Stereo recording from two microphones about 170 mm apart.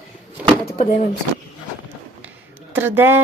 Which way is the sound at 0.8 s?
40° left (ahead or behind).